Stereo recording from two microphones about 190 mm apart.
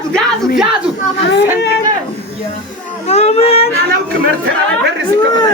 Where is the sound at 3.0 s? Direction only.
35° left (ahead or behind).